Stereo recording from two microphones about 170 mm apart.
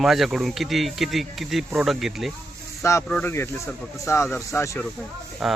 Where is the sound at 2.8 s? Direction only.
15° left (ahead or behind).